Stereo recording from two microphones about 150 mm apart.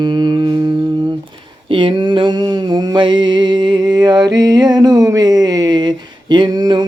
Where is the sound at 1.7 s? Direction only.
35° right (ahead or behind).